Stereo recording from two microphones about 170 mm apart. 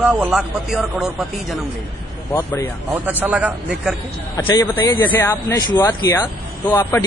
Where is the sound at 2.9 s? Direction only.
10° right (ahead or behind).